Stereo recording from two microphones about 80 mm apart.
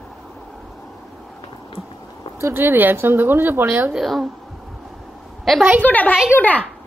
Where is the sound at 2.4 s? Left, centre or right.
Right.